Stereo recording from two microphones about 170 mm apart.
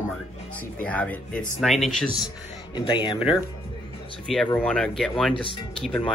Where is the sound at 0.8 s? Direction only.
10° left (ahead or behind).